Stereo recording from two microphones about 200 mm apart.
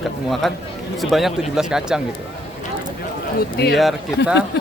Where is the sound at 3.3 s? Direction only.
55° left (ahead or behind).